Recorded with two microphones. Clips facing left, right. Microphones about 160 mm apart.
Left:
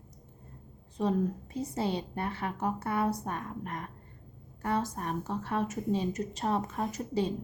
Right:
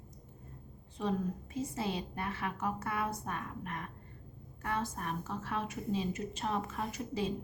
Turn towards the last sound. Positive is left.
turn(degrees=40)  # may be behind; listen again after turning